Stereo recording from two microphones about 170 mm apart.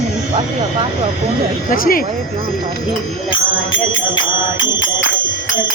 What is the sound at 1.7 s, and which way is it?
Speech, 55° left (ahead or behind).